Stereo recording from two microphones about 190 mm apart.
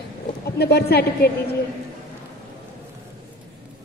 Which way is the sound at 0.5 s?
55° left (ahead or behind).